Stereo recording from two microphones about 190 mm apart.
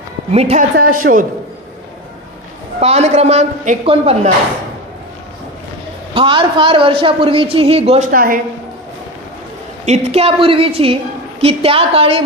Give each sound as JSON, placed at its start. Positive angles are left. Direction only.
{"t": 0.3, "sound": "a man's voice", "side_deg": -35}
{"t": 0.7, "sound": "speech", "side_deg": -45}
{"t": 2.8, "sound": "a man's voice", "side_deg": -35}
{"t": 6.1, "sound": "a woman's voice", "side_deg": -25}
{"t": 8.1, "sound": "speech", "side_deg": -45}
{"t": 9.8, "sound": "a woman's voice", "side_deg": -35}